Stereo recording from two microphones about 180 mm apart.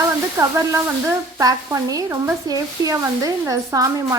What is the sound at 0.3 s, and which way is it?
Speech, 15° right (ahead or behind).